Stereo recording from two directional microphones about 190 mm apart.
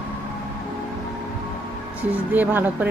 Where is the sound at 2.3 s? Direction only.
10° right (ahead or behind).